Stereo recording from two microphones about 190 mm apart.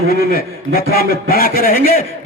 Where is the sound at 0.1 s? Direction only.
50° left (ahead or behind).